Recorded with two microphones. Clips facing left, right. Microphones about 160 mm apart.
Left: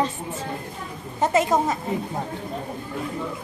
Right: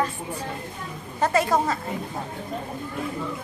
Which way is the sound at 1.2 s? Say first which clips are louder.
Left 1 dB; 20° left (ahead or behind).